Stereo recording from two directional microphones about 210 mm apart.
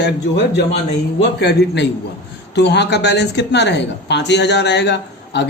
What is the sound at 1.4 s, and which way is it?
Speech, 55° left (ahead or behind).